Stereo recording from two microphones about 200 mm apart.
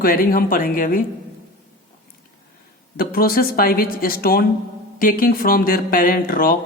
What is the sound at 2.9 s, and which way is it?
Speech, 50° left (ahead or behind).